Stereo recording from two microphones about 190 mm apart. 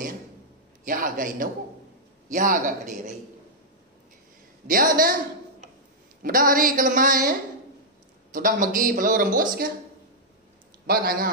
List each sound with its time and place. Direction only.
0.8 s speech: 45° right (ahead or behind)
4.6 s speech: 45° right (ahead or behind)
6.2 s speech: 50° right (ahead or behind)
10.9 s speech: 50° right (ahead or behind)